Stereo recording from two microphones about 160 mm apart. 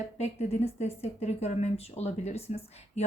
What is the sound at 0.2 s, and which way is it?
Speech, 45° left (ahead or behind).